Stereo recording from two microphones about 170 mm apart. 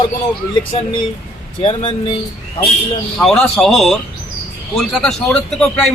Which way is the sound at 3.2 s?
Centre (ahead or behind).